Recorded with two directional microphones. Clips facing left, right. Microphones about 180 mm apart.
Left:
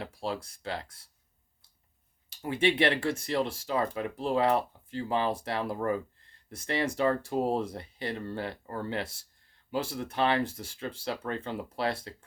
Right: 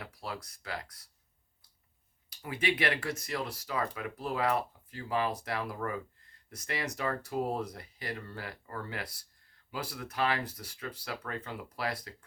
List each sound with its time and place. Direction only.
0.0 s speech: 25° left (ahead or behind)
2.3 s speech: 25° left (ahead or behind)